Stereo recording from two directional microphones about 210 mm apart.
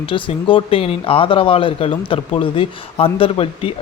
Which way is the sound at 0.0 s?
25° left (ahead or behind).